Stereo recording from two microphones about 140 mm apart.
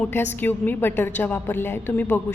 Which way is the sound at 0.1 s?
15° left (ahead or behind).